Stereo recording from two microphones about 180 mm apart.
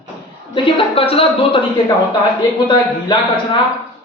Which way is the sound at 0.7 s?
30° left (ahead or behind).